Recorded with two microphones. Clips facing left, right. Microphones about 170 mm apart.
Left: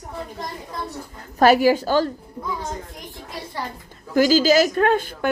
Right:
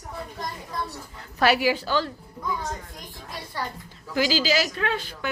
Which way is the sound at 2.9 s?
25° left (ahead or behind).